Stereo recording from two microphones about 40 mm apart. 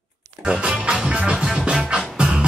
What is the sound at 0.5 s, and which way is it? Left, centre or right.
Music, right.